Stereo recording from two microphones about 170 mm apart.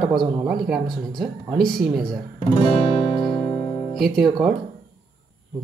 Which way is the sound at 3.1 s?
30° left (ahead or behind).